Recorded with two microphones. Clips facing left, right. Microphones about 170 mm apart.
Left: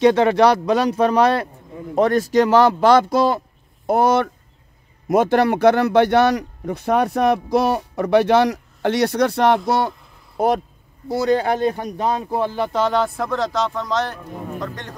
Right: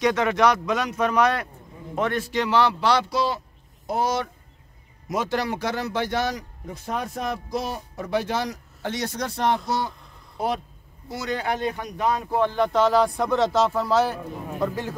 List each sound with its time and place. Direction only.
0.0 s speech: 30° left (ahead or behind); by 9.6 s 70° left (ahead or behind)
9.7 s a sound: 65° left (ahead or behind)
11.1 s speech: 35° left (ahead or behind)
12.5 s speech: centre (ahead or behind)